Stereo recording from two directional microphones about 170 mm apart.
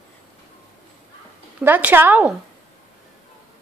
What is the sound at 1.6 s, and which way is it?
Speech, 10° right (ahead or behind).